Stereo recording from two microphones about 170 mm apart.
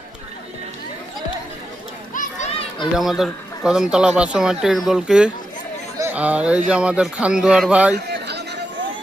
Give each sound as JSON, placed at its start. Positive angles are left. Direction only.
{"t": 2.1, "sound": "children playing", "side_deg": 45}
{"t": 3.0, "sound": "a man's voice", "side_deg": 0}
{"t": 7.9, "sound": "a sound", "side_deg": -75}